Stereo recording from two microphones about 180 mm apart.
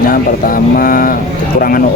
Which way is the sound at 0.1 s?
50° left (ahead or behind).